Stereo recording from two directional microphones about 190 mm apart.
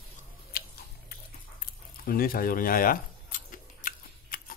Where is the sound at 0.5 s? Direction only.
55° left (ahead or behind).